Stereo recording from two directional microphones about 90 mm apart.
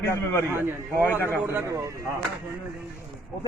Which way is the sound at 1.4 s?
30° right (ahead or behind).